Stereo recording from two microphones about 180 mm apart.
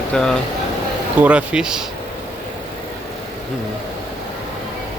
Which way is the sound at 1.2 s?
5° right (ahead or behind).